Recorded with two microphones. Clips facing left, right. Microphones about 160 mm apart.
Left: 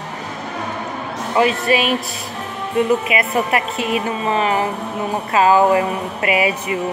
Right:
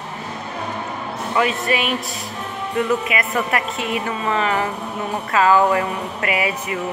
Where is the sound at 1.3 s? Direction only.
25° left (ahead or behind).